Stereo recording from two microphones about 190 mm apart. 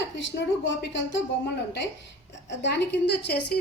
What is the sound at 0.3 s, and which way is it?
Speech, 75° left (ahead or behind).